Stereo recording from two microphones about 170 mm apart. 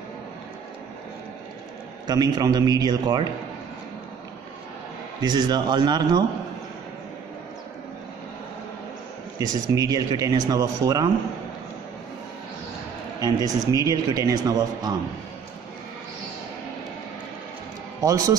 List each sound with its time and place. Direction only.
2.0 s a man's voice: 25° right (ahead or behind)
5.2 s a man's voice: 25° right (ahead or behind)
9.4 s a man's voice: 20° right (ahead or behind)
13.2 s a man's voice: 20° right (ahead or behind)
18.0 s a man's voice: 20° right (ahead or behind)